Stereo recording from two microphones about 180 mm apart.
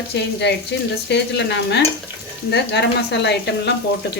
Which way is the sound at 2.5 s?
70° left (ahead or behind).